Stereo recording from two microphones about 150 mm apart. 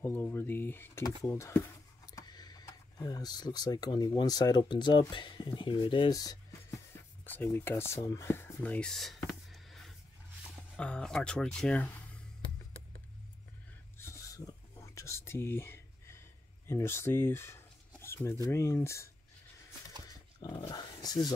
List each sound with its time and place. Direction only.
0.0 s speech: 15° left (ahead or behind)
7.2 s speech: 10° left (ahead or behind)
9.5 s a sound: centre (ahead or behind)
10.8 s speech: 5° left (ahead or behind)
13.9 s whispering: 20° left (ahead or behind)
16.6 s speech: 15° left (ahead or behind)
20.1 s dog: 25° left (ahead or behind)
20.7 s speech: 25° left (ahead or behind)